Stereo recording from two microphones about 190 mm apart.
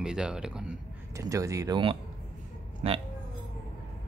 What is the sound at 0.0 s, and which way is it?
Speech, 5° right (ahead or behind).